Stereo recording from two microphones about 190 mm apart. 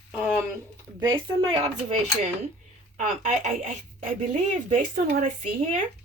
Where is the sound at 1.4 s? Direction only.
30° right (ahead or behind).